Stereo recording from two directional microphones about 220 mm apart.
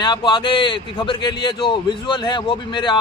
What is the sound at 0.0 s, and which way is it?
Speech, 20° left (ahead or behind).